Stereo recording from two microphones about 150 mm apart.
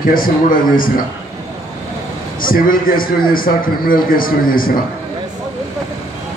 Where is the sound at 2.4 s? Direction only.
70° left (ahead or behind).